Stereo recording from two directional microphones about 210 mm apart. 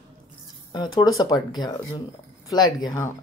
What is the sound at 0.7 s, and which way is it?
Speech, 20° left (ahead or behind).